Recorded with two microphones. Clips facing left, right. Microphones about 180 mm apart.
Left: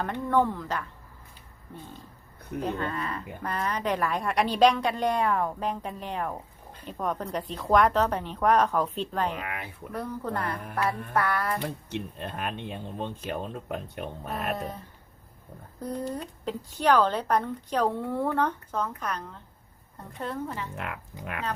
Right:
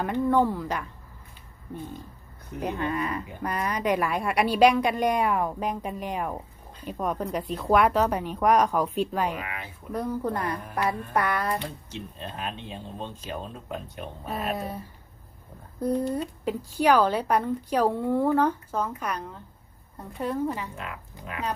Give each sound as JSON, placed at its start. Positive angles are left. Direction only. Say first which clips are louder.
{"t": 0.0, "sound": "speech", "louder": "right 3 dB", "side_deg": -10}
{"t": 2.6, "sound": "speech", "louder": "right 2 dB", "side_deg": -15}
{"t": 10.8, "sound": "music", "louder": "right 1 dB", "side_deg": -15}
{"t": 11.9, "sound": "speech", "louder": "left 3 dB", "side_deg": 60}
{"t": 14.3, "sound": "speech", "louder": "right 2 dB", "side_deg": -10}
{"t": 16.1, "sound": "speech", "louder": "right 5 dB", "side_deg": -10}
{"t": 20.7, "sound": "speech", "louder": "left 2 dB", "side_deg": 60}